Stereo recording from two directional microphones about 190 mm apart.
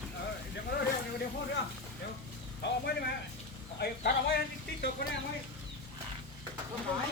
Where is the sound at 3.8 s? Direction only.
60° left (ahead or behind).